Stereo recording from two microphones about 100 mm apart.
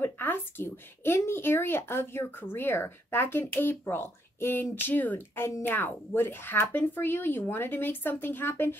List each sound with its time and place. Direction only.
0.0 s a woman's voice: 20° left (ahead or behind)